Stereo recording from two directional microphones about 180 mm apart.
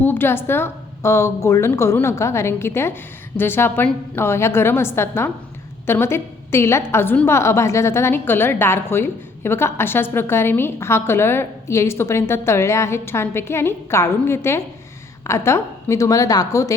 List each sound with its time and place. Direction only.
0.0 s a woman's voice: 10° left (ahead or behind)